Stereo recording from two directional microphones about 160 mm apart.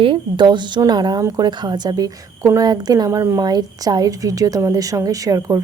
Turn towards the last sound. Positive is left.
turn(degrees=-20)  # may be behind; listen again after turning